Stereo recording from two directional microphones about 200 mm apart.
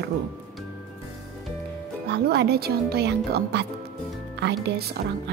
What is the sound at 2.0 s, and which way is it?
Speech, 55° right (ahead or behind).